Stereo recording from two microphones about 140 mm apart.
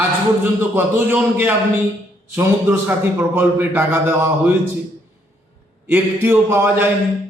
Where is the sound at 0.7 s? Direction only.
15° right (ahead or behind).